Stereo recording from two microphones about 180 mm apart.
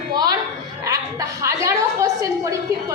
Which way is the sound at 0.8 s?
20° right (ahead or behind).